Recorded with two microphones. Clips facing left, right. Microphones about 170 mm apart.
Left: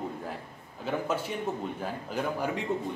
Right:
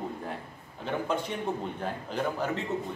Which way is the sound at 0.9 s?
5° left (ahead or behind).